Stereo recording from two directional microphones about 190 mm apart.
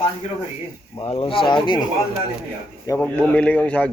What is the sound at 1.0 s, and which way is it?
Speech, 30° left (ahead or behind).